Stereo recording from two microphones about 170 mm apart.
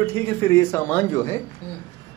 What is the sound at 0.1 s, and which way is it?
A man's voice, 15° left (ahead or behind).